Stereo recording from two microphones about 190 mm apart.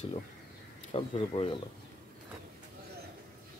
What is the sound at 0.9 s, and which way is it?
Speech, 30° left (ahead or behind).